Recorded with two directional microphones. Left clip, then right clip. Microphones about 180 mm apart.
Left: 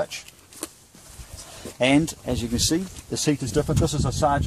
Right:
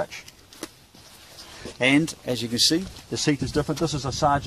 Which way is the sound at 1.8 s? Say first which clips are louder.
Even; 50° left (ahead or behind).